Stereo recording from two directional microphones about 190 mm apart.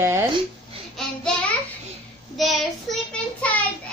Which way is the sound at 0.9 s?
5° left (ahead or behind).